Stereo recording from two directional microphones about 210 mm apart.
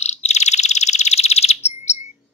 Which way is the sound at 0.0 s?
30° left (ahead or behind).